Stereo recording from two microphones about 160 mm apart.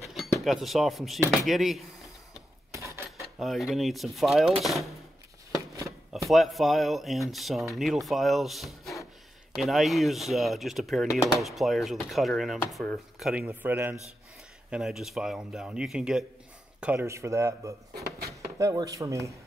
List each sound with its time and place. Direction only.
0.4 s speech: centre (ahead or behind)
3.2 s speech: centre (ahead or behind)
5.9 s speech: centre (ahead or behind)
13.3 s speech: 10° right (ahead or behind)
16.8 s speech: 15° right (ahead or behind)
17.9 s drawer open or close: 75° right (ahead or behind)
18.6 s speech: 20° right (ahead or behind)